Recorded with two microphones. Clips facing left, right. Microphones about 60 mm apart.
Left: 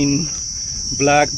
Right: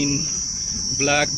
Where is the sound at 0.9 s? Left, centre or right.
Left.